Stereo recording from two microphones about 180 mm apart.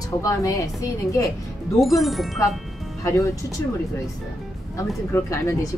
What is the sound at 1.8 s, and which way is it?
Speech, centre (ahead or behind).